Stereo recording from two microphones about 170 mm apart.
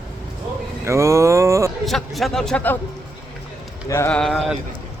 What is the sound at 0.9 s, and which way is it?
Speech, 15° right (ahead or behind).